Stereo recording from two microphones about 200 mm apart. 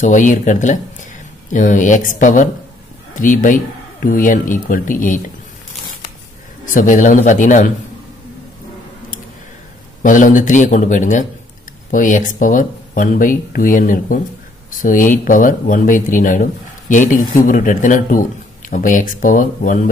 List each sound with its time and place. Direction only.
0.0 s speech: 40° left (ahead or behind)
6.6 s speech: 40° left (ahead or behind)
10.0 s speech: 40° left (ahead or behind)